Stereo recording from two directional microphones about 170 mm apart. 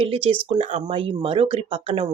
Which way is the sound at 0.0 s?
35° right (ahead or behind).